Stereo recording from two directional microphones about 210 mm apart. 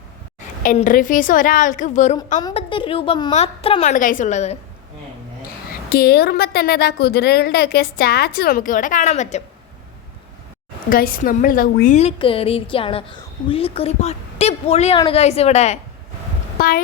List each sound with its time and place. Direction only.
0.6 s a woman's voice: 40° left (ahead or behind)
3.9 s a woman's voice: 40° left (ahead or behind)
5.9 s a woman's voice: 50° left (ahead or behind)
10.8 s a woman's voice: 45° left (ahead or behind)
16.6 s a woman's voice: 45° left (ahead or behind)